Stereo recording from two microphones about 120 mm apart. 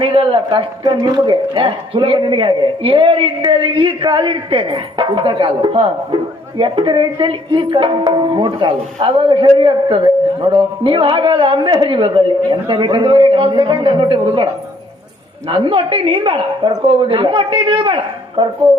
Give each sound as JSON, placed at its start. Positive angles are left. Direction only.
{"t": 0.0, "sound": "speech", "side_deg": -45}
{"t": 1.0, "sound": "a man's voice", "side_deg": -35}
{"t": 15.4, "sound": "speech", "side_deg": -45}